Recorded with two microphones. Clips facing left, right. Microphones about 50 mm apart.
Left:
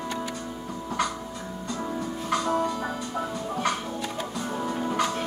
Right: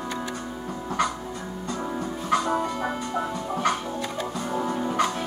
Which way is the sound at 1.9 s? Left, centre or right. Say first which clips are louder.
Right 4 dB; centre.